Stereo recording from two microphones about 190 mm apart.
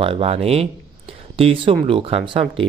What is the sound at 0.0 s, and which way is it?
A man's voice, 30° right (ahead or behind).